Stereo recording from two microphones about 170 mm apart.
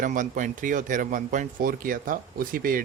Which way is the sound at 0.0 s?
50° right (ahead or behind).